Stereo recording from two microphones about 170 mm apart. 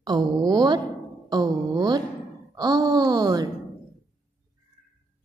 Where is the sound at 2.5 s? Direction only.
20° right (ahead or behind).